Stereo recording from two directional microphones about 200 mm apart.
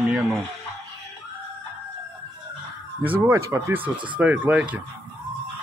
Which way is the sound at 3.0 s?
10° right (ahead or behind).